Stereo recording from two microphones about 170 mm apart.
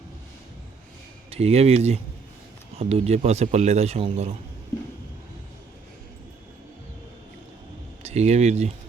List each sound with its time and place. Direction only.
1.3 s a man's voice: 35° right (ahead or behind)
8.0 s speech: 40° right (ahead or behind)